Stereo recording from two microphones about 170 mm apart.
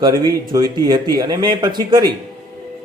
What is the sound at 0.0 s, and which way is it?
Speech, 25° right (ahead or behind).